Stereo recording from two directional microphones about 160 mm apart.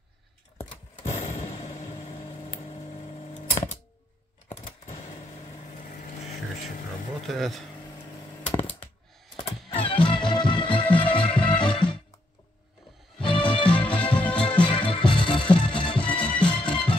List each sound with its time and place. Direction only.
0.6 s a sound: 40° left (ahead or behind)
2.0 s camera: 40° left (ahead or behind)
4.5 s a sound: 45° left (ahead or behind)
5.8 s vehicle: 50° left (ahead or behind)
7.2 s speech: centre (ahead or behind)
9.4 s music: 35° left (ahead or behind)
13.2 s music: 30° left (ahead or behind)
13.7 s music: 10° left (ahead or behind)
14.0 s music: 30° left (ahead or behind)